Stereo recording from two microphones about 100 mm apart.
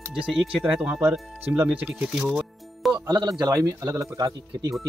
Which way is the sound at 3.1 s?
40° right (ahead or behind).